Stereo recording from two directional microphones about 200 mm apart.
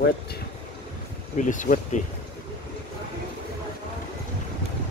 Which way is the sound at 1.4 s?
40° left (ahead or behind).